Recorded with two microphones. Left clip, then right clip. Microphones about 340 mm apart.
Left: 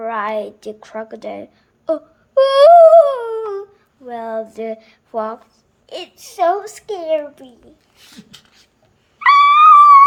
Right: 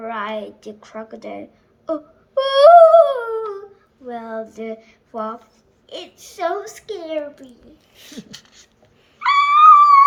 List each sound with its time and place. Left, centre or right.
0.0 s a child's voice: centre
1.9 s a sound: left
4.1 s a child's voice: left
9.1 s dog: centre